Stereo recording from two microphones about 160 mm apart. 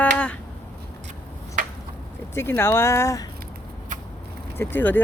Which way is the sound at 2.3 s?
15° left (ahead or behind).